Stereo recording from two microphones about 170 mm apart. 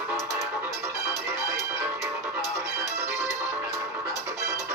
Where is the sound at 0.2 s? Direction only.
15° right (ahead or behind).